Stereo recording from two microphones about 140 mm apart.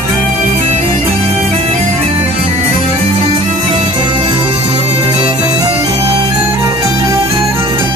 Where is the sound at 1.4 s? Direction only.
55° right (ahead or behind).